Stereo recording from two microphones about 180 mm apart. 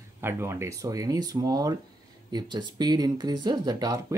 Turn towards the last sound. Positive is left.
turn(degrees=-20)  # may be behind; listen again after turning